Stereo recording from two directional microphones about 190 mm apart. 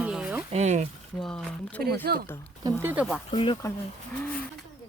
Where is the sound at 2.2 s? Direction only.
10° left (ahead or behind).